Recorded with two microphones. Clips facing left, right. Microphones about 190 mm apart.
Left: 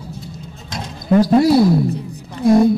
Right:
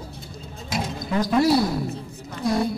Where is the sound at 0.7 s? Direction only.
10° right (ahead or behind).